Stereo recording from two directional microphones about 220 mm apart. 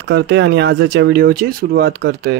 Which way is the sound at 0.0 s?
50° right (ahead or behind).